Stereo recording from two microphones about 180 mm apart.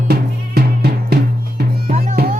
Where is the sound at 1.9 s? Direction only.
50° right (ahead or behind).